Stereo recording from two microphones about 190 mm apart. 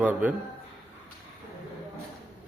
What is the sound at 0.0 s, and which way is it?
Speech, 10° right (ahead or behind).